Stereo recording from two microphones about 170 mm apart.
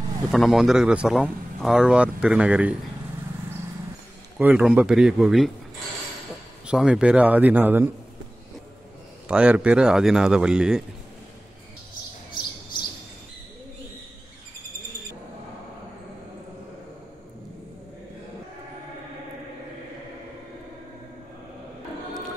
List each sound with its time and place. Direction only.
0.3 s speech: centre (ahead or behind)
4.4 s speech: 10° right (ahead or behind)
6.7 s speech: 5° right (ahead or behind)
9.3 s speech: 5° right (ahead or behind)